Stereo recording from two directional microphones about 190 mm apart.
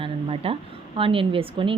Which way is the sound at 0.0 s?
30° right (ahead or behind).